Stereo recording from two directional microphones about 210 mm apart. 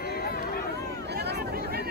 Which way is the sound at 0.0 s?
45° left (ahead or behind).